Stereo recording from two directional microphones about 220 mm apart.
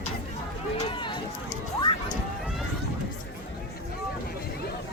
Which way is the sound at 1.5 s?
20° left (ahead or behind).